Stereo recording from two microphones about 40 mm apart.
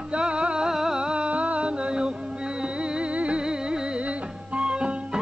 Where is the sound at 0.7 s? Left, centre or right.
Centre.